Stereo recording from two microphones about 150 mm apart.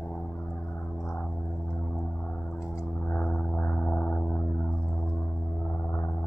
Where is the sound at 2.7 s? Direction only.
15° left (ahead or behind).